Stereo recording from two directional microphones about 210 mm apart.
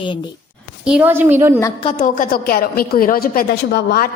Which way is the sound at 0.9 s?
5° right (ahead or behind).